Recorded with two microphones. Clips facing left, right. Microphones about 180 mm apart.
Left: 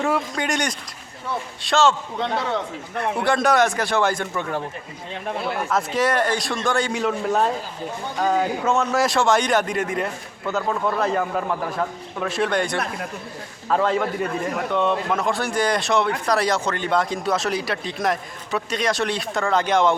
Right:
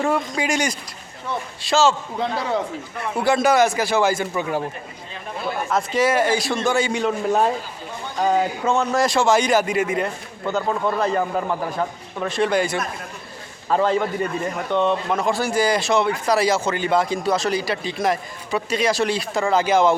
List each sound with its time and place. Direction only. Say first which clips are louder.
0.0 s speech: right 1 dB; centre (ahead or behind)
5.7 s speech: right 2 dB; centre (ahead or behind)